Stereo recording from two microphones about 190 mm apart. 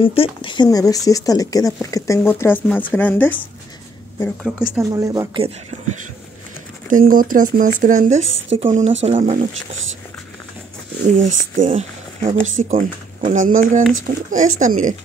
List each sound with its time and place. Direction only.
0.0 s speech: 30° left (ahead or behind); by 3.3 s 10° left (ahead or behind)
4.4 s speech: centre (ahead or behind)
4.7 s speech: 20° right (ahead or behind)
6.9 s speech: 45° right (ahead or behind)
9.6 s speech: 90° right
11.1 s speech: 40° right (ahead or behind)